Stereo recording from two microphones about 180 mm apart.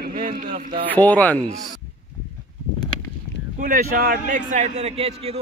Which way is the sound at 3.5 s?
50° right (ahead or behind).